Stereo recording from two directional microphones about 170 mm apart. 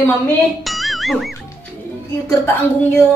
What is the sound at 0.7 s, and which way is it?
Music, centre (ahead or behind).